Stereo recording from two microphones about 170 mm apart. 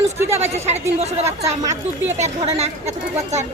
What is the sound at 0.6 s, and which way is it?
Speech, 40° right (ahead or behind).